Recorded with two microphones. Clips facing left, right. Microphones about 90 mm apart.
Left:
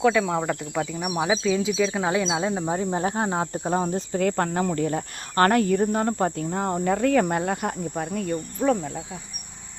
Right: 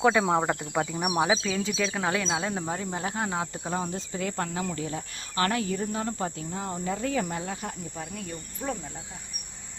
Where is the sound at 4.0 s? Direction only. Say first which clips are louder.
Left 8 dB; 50° left (ahead or behind); by 8.9 s 80° left.